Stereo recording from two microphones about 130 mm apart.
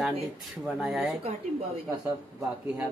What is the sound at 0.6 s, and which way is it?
Speech, centre (ahead or behind).